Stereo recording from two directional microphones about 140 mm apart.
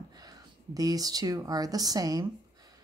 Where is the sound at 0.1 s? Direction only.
25° right (ahead or behind).